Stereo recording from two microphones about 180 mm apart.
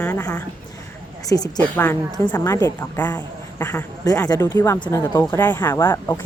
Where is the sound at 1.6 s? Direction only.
10° left (ahead or behind).